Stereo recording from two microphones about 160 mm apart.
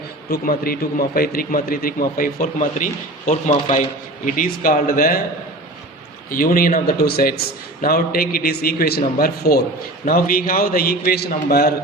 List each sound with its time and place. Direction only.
0.3 s a man's voice: 70° left (ahead or behind)
6.3 s a man's voice: 60° left (ahead or behind)